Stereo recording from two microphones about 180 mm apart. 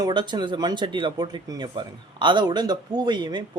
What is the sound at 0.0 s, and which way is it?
Speech, 25° right (ahead or behind).